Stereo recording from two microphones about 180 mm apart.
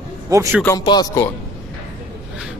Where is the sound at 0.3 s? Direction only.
20° right (ahead or behind).